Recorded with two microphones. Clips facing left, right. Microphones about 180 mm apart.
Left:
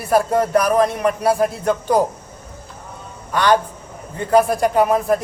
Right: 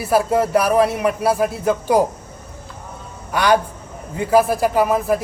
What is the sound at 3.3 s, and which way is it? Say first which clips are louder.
A man's voice: even; 10° right (ahead or behind).